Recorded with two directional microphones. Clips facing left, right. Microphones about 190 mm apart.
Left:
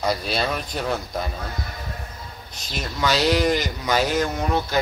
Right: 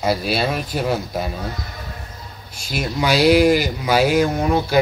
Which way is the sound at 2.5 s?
10° right (ahead or behind).